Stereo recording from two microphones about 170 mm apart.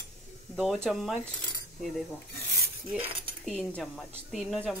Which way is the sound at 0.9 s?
Centre (ahead or behind).